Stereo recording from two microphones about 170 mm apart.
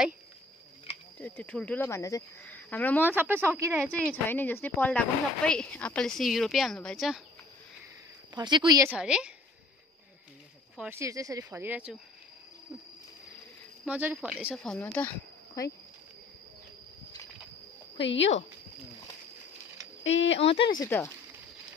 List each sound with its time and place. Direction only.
1.2 s speech: 10° left (ahead or behind)
3.2 s speech: 15° right (ahead or behind)
3.9 s speech: 10° left (ahead or behind)
8.4 s a woman's voice: 25° right (ahead or behind)
8.9 s speech: 5° right (ahead or behind)
10.8 s speech: 15° right (ahead or behind)
13.8 s speech: 10° right (ahead or behind)
14.6 s speech: 5° left (ahead or behind)
17.9 s speech: 90° left
20.0 s speech: 90° left
20.3 s speech: 35° left (ahead or behind)
20.8 s speech: 15° left (ahead or behind)